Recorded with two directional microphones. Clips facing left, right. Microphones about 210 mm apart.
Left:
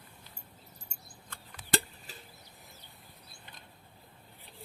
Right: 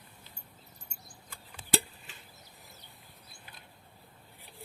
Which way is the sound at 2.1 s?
35° left (ahead or behind).